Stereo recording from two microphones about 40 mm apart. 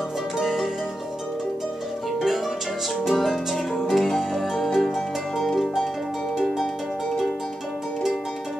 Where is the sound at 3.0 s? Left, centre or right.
Centre.